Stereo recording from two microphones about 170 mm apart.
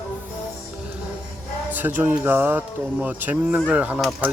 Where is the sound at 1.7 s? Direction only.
10° right (ahead or behind).